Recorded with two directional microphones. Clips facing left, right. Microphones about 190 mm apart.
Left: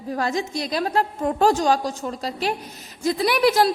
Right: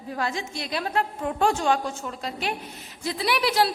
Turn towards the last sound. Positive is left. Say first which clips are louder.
# left 5 dB
turn(degrees=45)  # may be behind; listen again after turning